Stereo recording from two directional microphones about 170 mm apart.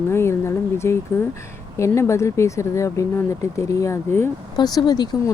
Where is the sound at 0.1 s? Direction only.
15° left (ahead or behind).